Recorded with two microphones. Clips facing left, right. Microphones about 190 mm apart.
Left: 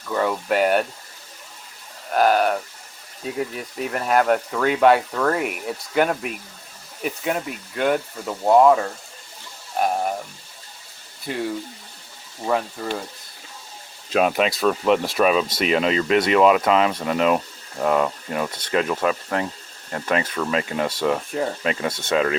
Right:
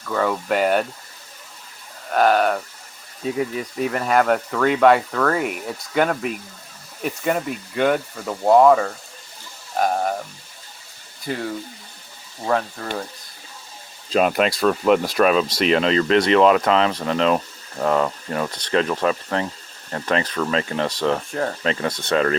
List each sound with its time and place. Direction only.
0.1 s speech: 5° left (ahead or behind)
2.1 s speech: centre (ahead or behind)
11.3 s speech: 5° left (ahead or behind)
14.1 s speech: centre (ahead or behind)
21.8 s speech: 25° left (ahead or behind)
22.1 s speech: 5° left (ahead or behind)